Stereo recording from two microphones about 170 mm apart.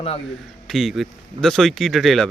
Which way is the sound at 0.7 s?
Centre (ahead or behind).